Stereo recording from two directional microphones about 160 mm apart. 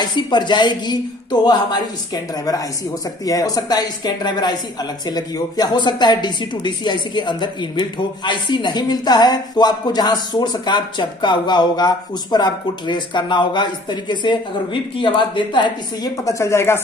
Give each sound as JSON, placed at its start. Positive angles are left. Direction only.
{"t": 0.0, "sound": "speech", "side_deg": 30}
{"t": 3.3, "sound": "speech", "side_deg": 20}